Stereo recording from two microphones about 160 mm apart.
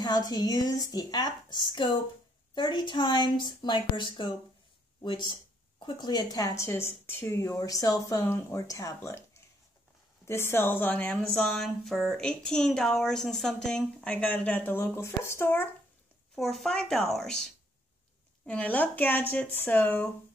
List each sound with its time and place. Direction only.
0.0 s speech: 25° left (ahead or behind)
10.2 s a woman's voice: 15° left (ahead or behind)
16.3 s a woman's voice: centre (ahead or behind)